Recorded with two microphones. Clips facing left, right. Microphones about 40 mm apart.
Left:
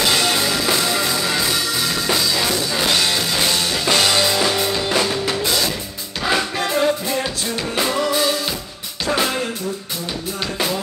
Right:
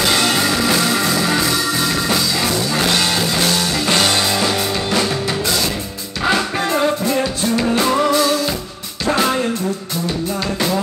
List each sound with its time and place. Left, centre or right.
0.5 s music: centre
6.8 s music: centre
7.8 s music: right